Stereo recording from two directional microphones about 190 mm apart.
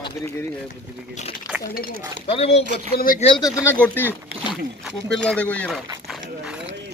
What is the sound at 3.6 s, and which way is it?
Speech, 10° left (ahead or behind).